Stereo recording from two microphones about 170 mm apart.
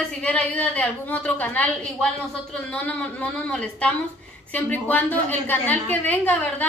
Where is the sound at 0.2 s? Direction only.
10° left (ahead or behind).